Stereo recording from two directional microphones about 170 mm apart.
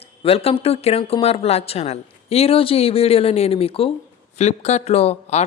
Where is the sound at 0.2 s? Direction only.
35° left (ahead or behind).